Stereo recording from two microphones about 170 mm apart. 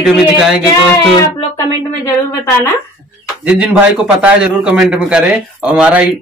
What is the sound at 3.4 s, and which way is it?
A man's voice, 5° right (ahead or behind).